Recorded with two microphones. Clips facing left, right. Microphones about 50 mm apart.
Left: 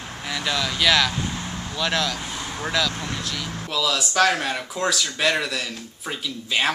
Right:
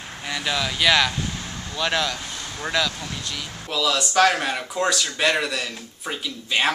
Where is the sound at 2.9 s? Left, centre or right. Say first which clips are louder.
Left 3 dB; left.